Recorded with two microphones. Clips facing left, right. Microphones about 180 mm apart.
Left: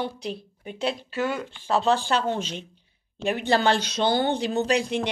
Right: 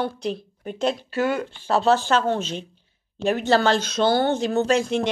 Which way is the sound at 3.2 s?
40° right (ahead or behind).